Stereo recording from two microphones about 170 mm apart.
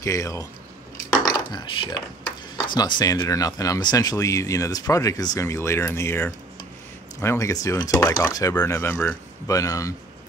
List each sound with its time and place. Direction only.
0.0 s speech: 20° left (ahead or behind)